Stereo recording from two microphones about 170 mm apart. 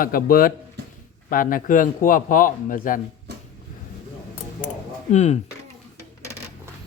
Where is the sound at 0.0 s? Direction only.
55° left (ahead or behind).